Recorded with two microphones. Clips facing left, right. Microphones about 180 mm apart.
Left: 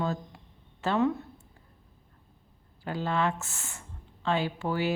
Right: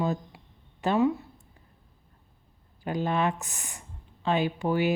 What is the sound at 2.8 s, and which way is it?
Speech, 15° right (ahead or behind).